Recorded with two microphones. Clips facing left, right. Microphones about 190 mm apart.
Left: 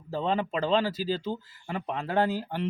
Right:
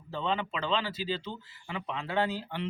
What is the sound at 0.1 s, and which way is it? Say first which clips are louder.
Speech: left 4 dB; 40° left (ahead or behind).